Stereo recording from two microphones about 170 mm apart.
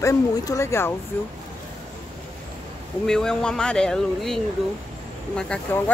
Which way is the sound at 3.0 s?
5° left (ahead or behind).